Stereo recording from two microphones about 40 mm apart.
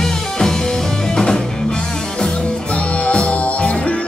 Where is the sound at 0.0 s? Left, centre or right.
Centre.